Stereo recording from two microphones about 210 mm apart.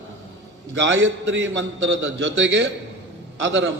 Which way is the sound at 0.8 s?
65° right (ahead or behind).